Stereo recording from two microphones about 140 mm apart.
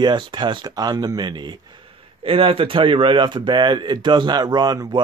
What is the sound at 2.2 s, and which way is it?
Speech, 40° right (ahead or behind).